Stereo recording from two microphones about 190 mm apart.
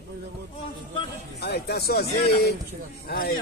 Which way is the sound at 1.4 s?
55° left (ahead or behind).